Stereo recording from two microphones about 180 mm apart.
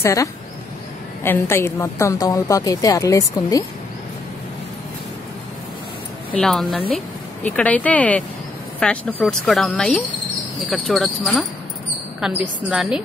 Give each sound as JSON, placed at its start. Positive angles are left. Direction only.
{"t": 0.0, "sound": "a woman's voice", "side_deg": 15}
{"t": 6.3, "sound": "speech", "side_deg": 0}